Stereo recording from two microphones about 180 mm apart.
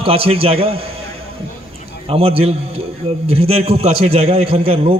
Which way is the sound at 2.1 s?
35° right (ahead or behind).